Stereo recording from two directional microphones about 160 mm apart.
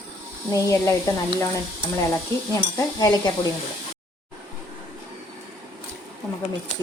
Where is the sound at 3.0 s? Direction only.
25° left (ahead or behind).